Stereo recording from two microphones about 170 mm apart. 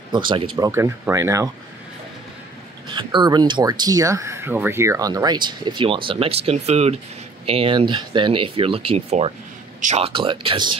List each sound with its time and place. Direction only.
0.3 s speech: 30° right (ahead or behind)
0.7 s speech: 15° right (ahead or behind)
2.9 s speech: 25° right (ahead or behind)